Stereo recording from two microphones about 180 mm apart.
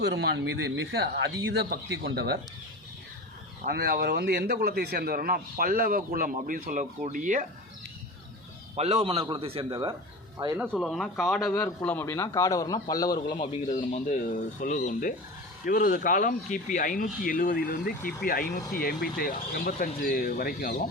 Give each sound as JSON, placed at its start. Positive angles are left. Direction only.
{"t": 0.0, "sound": "a man's voice", "side_deg": -75}
{"t": 3.7, "sound": "a man's voice", "side_deg": -60}
{"t": 8.7, "sound": "a man's voice", "side_deg": -35}
{"t": 10.7, "sound": "speech", "side_deg": 5}
{"t": 11.5, "sound": "a man's voice", "side_deg": 10}
{"t": 13.6, "sound": "speech", "side_deg": 45}